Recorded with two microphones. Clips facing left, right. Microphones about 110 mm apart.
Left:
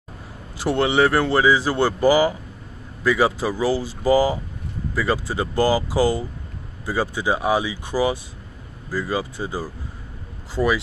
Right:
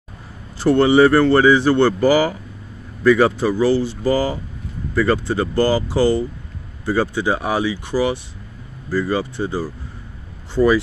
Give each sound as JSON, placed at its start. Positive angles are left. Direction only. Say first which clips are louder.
{"t": 0.6, "sound": "speech", "louder": "right 6 dB", "side_deg": 0}